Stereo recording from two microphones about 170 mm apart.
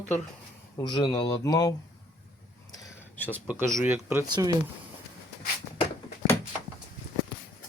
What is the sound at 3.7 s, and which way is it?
Speech, 15° right (ahead or behind).